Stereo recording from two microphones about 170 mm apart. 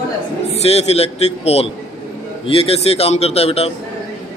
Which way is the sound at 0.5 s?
40° left (ahead or behind).